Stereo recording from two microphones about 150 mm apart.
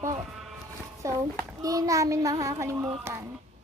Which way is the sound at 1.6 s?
25° right (ahead or behind).